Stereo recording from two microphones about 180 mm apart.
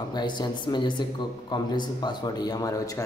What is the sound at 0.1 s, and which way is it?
A man's voice, 25° left (ahead or behind).